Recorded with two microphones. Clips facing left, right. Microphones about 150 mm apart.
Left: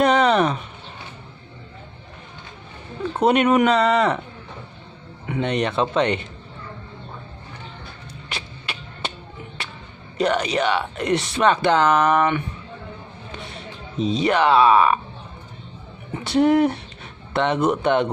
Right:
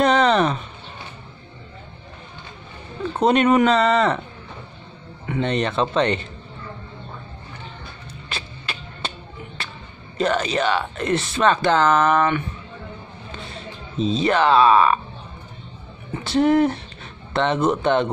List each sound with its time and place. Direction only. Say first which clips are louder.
0.0 s speech: even; 10° left (ahead or behind)
3.1 s speech: even; 10° left (ahead or behind)
5.2 s speech: even; 15° left (ahead or behind)
8.3 s music: right 1 dB; 15° left (ahead or behind)
10.1 s speech: even; 15° left (ahead or behind)
13.9 s speech: even; 15° left (ahead or behind)
16.1 s speech: even; 15° left (ahead or behind)